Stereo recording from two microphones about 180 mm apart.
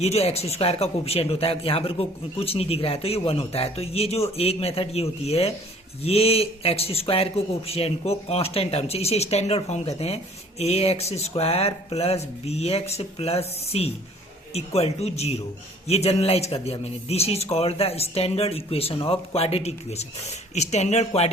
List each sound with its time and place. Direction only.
0.0 s speech: 35° left (ahead or behind)